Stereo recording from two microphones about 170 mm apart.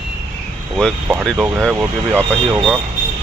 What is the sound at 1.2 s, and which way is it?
Speech, centre (ahead or behind).